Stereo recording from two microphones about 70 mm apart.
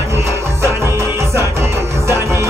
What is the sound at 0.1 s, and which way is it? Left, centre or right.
Music, right.